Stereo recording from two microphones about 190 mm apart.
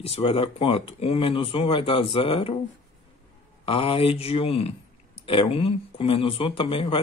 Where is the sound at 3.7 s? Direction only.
30° left (ahead or behind).